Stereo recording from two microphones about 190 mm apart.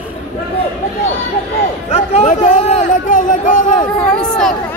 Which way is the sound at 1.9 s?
35° left (ahead or behind).